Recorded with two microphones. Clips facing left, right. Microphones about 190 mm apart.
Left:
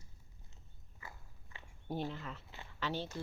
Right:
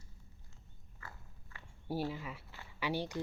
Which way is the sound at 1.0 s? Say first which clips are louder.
Even; 15° left (ahead or behind).